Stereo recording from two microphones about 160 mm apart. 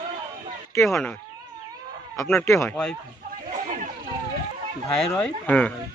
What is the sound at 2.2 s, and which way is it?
Speech, 15° left (ahead or behind).